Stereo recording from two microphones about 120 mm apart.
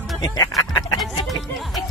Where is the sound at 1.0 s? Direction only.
Centre (ahead or behind).